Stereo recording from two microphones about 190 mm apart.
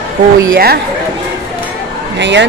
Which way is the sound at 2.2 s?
70° right (ahead or behind).